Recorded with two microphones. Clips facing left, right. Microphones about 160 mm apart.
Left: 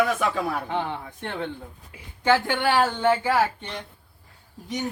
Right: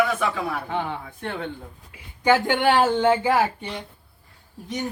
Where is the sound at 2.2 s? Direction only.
20° right (ahead or behind).